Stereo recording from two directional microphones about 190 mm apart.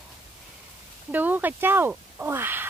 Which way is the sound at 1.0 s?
10° right (ahead or behind).